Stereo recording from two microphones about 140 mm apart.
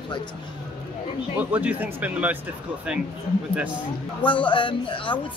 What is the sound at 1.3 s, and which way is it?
Speech, 10° right (ahead or behind).